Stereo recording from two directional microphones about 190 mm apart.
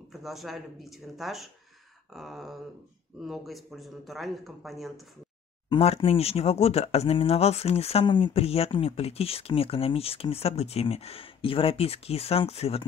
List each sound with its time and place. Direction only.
0.1 s speech: centre (ahead or behind)
5.7 s speech: 30° left (ahead or behind)